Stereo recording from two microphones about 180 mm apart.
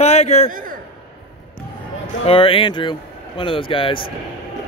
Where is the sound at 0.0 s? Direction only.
35° left (ahead or behind).